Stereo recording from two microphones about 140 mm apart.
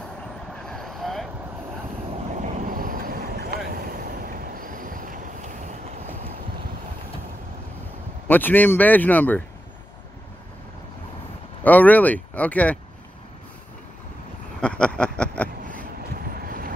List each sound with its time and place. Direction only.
0.7 s vehicle: centre (ahead or behind)
2.3 s vehicle: 60° right (ahead or behind)
8.3 s speech: 15° left (ahead or behind)
11.6 s speech: 10° left (ahead or behind)
14.6 s a sound: 10° left (ahead or behind)
16.0 s vehicle: 90° right